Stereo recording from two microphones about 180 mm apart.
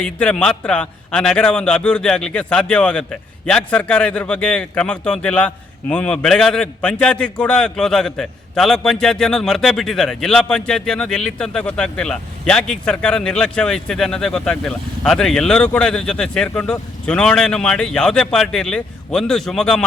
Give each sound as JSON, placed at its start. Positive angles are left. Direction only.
{"t": 0.0, "sound": "a man's voice", "side_deg": 5}